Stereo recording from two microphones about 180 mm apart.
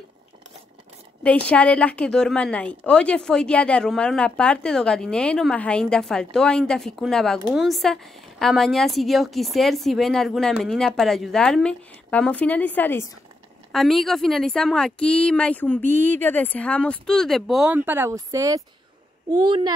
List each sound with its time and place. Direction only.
1.2 s a woman's voice: 5° left (ahead or behind)
13.7 s a woman's voice: centre (ahead or behind); by 19.7 s 25° right (ahead or behind)